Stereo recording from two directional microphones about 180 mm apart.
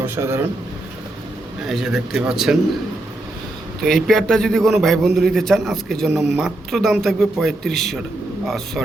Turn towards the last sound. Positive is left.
turn(degrees=0)  # may be behind; listen again after turning